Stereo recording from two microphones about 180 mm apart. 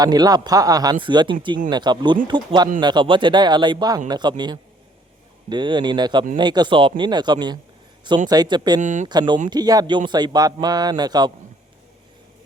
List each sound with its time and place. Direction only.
0.0 s speech: 20° right (ahead or behind)
8.8 s speech: 40° right (ahead or behind)
9.0 s speech: 25° right (ahead or behind)